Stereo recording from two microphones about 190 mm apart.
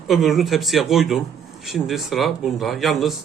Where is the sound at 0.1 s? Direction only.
Centre (ahead or behind).